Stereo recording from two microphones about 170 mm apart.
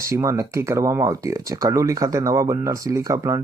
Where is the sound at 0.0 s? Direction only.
15° right (ahead or behind).